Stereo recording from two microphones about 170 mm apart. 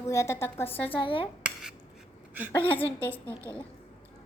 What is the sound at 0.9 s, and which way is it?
Speech, 30° left (ahead or behind).